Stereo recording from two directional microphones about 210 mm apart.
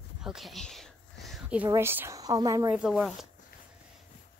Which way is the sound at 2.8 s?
Centre (ahead or behind).